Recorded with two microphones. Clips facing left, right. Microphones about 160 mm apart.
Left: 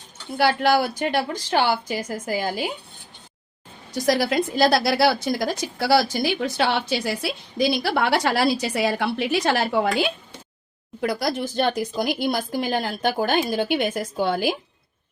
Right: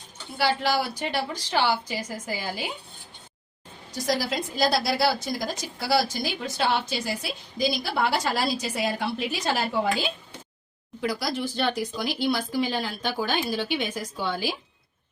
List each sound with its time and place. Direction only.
0.3 s speech: 55° left (ahead or behind)
4.0 s a woman's voice: 70° left (ahead or behind)
11.0 s speech: 55° left (ahead or behind)